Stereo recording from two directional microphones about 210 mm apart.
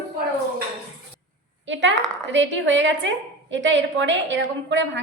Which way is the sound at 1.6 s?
60° right (ahead or behind).